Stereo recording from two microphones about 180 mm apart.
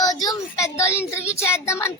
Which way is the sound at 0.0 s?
20° left (ahead or behind).